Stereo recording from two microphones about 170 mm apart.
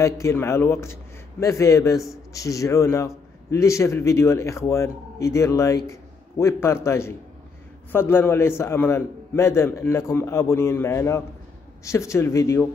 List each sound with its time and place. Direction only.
0.0 s a man's voice: 15° left (ahead or behind)